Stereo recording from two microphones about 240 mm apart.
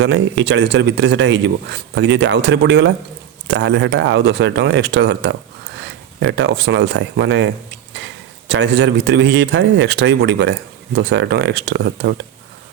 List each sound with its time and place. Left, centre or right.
0.0 s speech: right